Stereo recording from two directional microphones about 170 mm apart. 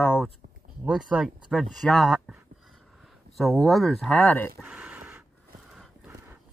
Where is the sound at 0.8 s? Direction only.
5° right (ahead or behind).